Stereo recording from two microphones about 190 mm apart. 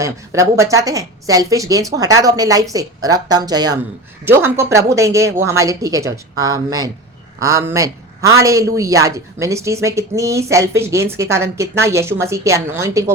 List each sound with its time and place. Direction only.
0.0 s a man's voice: 15° right (ahead or behind)